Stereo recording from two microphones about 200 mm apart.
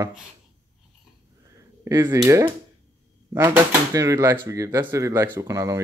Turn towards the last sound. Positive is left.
turn(degrees=-15)  # may be behind; listen again after turning